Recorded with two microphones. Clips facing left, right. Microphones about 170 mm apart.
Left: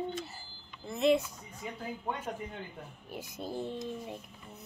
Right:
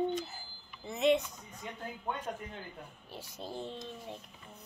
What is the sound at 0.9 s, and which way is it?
Speech, centre (ahead or behind).